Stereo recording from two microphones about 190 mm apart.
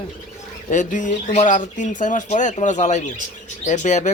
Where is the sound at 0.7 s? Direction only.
40° left (ahead or behind).